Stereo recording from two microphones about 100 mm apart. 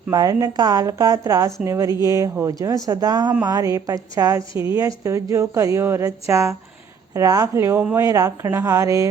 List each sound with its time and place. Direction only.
0.1 s speech: 35° right (ahead or behind)
7.8 s speech: 15° right (ahead or behind)
8.0 s speech: 35° right (ahead or behind)